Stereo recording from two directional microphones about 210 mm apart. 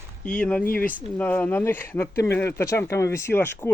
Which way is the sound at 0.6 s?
45° left (ahead or behind).